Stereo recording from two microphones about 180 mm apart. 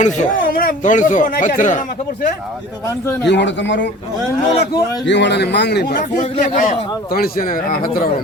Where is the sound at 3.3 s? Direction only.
85° left.